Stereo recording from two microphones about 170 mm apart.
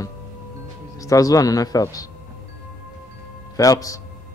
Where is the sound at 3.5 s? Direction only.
20° left (ahead or behind).